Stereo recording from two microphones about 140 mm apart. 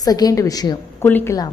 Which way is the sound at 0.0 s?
25° left (ahead or behind).